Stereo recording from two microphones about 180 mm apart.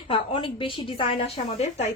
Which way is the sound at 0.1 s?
30° left (ahead or behind).